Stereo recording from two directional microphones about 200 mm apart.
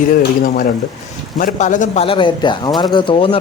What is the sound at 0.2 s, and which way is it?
Speech, 45° left (ahead or behind).